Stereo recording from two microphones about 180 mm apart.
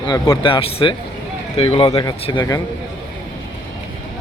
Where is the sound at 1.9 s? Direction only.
20° left (ahead or behind).